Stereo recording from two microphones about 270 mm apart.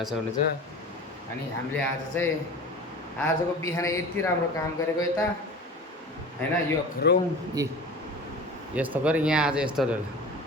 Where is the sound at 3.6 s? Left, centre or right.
Centre.